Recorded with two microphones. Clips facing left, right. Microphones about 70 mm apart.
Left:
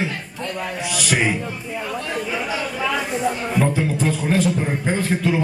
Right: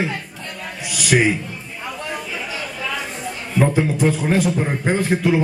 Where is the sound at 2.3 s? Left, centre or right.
Centre.